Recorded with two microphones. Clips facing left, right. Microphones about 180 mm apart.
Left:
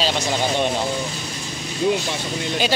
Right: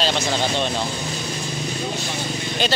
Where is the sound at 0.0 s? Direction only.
10° left (ahead or behind).